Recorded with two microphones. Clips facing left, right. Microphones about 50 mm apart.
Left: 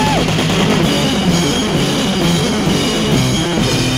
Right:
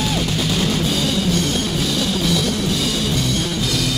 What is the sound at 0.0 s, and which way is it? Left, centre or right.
Music, left.